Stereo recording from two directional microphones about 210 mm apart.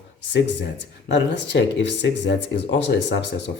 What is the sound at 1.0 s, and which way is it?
Speech, 55° left (ahead or behind).